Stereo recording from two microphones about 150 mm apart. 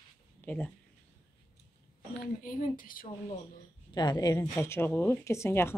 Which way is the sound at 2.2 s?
65° left (ahead or behind).